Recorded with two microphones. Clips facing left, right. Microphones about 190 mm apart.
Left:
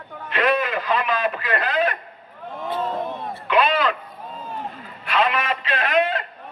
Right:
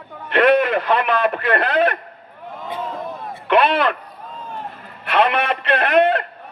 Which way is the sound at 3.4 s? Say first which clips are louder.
Right 3 dB; 60° right (ahead or behind).